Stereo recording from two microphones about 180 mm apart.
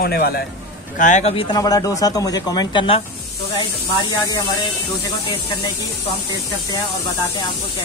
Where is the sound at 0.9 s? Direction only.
45° left (ahead or behind).